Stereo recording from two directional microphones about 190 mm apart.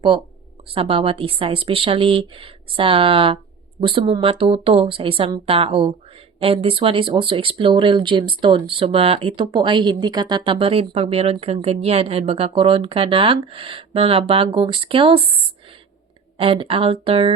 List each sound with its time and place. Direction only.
0.1 s speech: 25° right (ahead or behind)
16.4 s speech: 30° right (ahead or behind)